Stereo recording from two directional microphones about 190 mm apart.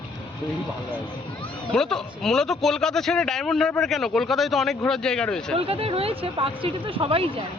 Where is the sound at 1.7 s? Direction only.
5° left (ahead or behind).